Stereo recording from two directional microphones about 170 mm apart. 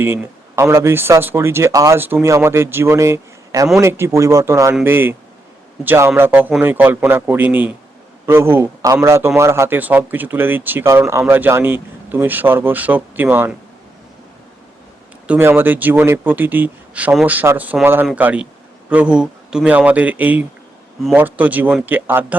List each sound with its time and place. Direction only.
0.0 s a man's voice: 15° right (ahead or behind)
15.3 s a man's voice: 15° right (ahead or behind)